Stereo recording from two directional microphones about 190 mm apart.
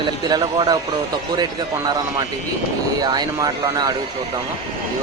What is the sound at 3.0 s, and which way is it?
Speech, 20° right (ahead or behind).